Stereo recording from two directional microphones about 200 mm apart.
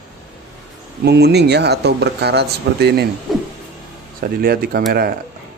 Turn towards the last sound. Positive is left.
turn(degrees=-50)  # may be behind; listen again after turning